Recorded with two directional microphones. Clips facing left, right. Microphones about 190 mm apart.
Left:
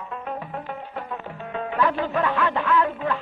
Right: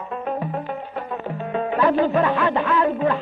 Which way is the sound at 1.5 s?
30° right (ahead or behind).